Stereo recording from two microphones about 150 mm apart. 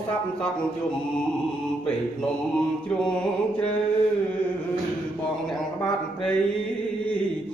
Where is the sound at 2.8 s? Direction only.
5° left (ahead or behind).